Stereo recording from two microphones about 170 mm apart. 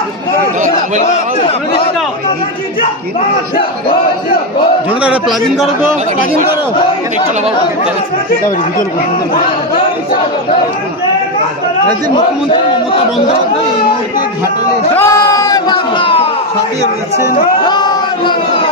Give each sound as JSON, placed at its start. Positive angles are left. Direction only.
{"t": 1.0, "sound": "a man's voice", "side_deg": 35}
{"t": 5.0, "sound": "a man's voice", "side_deg": -5}
{"t": 15.0, "sound": "speech", "side_deg": 20}
{"t": 17.6, "sound": "speech", "side_deg": 25}